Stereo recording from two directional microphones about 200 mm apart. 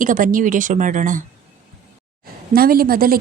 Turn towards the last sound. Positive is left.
turn(degrees=-45)  # may be behind; listen again after turning